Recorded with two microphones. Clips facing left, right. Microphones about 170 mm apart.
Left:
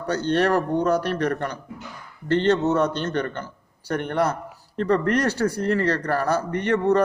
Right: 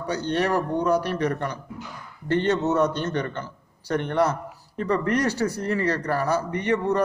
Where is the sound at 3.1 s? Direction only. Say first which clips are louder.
Left 1 dB; 60° left (ahead or behind).